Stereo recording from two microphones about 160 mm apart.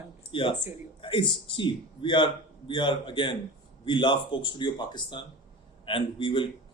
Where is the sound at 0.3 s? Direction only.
35° left (ahead or behind).